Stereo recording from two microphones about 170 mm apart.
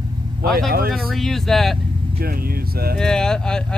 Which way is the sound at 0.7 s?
60° right (ahead or behind).